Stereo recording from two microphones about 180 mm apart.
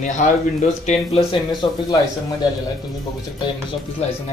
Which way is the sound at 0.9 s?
35° left (ahead or behind).